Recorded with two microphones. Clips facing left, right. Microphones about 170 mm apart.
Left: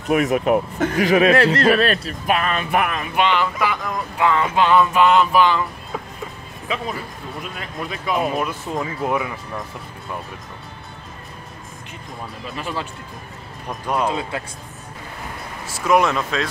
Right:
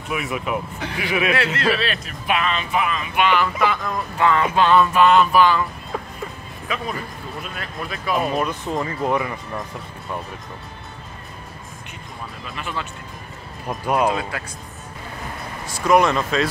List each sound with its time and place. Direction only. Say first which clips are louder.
0.1 s speech: left 8 dB; 45° left (ahead or behind); by 3.1 s 60° left (ahead or behind)
3.2 s speech: even; 20° left (ahead or behind)
3.6 s a sound: right 1 dB; 15° left (ahead or behind)
6.7 s speech: left 1 dB; 25° left (ahead or behind)
8.2 s speech: even; 5° left (ahead or behind)
12.5 s speech: left 2 dB; 35° left (ahead or behind)
13.7 s speech: right 2 dB; 10° right (ahead or behind)
14.3 s speech: left 3 dB; 25° left (ahead or behind)
15.6 s speech: right 1 dB; 5° left (ahead or behind)